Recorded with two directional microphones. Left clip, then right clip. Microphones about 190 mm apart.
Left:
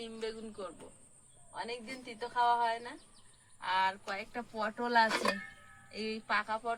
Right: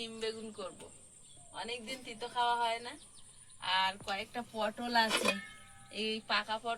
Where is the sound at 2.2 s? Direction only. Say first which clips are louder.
Left 3 dB; 20° right (ahead or behind).